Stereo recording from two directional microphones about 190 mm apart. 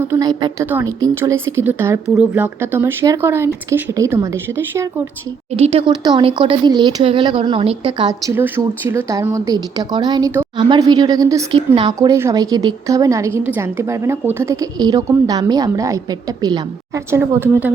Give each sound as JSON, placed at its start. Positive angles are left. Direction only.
{"t": 0.1, "sound": "a woman's voice", "side_deg": -20}
{"t": 5.5, "sound": "speech", "side_deg": -30}
{"t": 11.9, "sound": "a woman's voice", "side_deg": -15}